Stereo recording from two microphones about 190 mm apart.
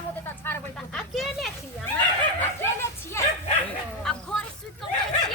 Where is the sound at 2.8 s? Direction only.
15° left (ahead or behind).